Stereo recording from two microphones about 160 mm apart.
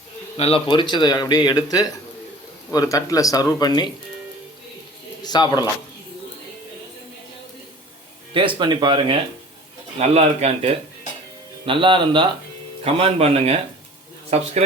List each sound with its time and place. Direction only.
0.3 s speech: 35° left (ahead or behind)
5.2 s speech: 25° left (ahead or behind)
8.3 s speech: 30° right (ahead or behind)